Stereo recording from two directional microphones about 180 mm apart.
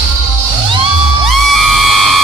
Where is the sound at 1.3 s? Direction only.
Centre (ahead or behind).